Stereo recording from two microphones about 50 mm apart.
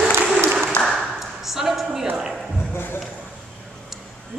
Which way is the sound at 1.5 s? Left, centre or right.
Centre.